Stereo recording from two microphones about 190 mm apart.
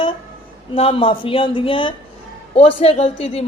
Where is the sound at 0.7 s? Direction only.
30° left (ahead or behind).